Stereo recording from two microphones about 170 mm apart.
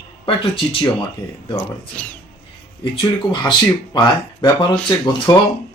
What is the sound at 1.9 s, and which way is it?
Speech, 10° left (ahead or behind).